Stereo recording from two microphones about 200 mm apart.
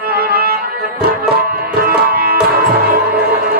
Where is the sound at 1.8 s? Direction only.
50° right (ahead or behind).